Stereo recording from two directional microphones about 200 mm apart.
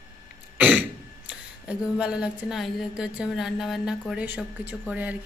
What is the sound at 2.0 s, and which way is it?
A woman's voice, 5° right (ahead or behind).